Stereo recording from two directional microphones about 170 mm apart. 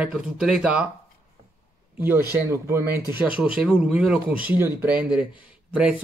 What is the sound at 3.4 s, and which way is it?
Speech, 5° right (ahead or behind).